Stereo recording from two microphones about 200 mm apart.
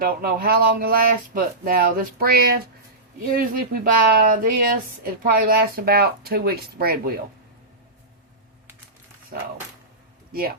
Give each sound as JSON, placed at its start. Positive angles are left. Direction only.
{"t": 0.0, "sound": "speech", "side_deg": -45}